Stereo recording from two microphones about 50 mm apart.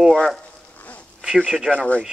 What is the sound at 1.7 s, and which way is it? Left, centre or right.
Speech, left.